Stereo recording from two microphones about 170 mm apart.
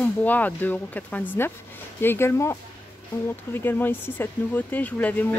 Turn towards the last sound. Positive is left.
turn(degrees=10)  # may be behind; listen again after turning